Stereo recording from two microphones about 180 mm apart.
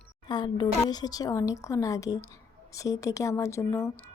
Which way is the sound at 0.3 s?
25° left (ahead or behind).